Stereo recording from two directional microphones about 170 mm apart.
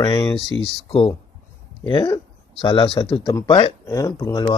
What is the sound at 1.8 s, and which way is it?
Speech, 25° left (ahead or behind).